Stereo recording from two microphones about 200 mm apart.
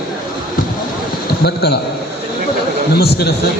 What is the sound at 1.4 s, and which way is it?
Speech, 55° left (ahead or behind).